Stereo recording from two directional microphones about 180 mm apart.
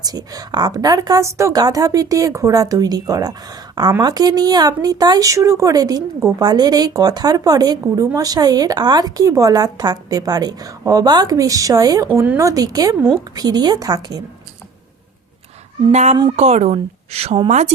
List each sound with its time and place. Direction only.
0.0 s a woman's voice: 20° right (ahead or behind)
15.9 s a woman's voice: 40° right (ahead or behind)